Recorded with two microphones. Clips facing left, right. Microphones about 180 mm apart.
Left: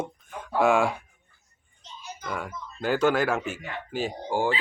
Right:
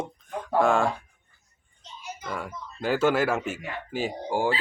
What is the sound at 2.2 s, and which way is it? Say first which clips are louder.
Speech: left 1 dB; centre (ahead or behind).